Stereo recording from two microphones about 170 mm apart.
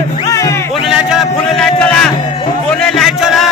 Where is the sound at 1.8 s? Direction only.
10° left (ahead or behind).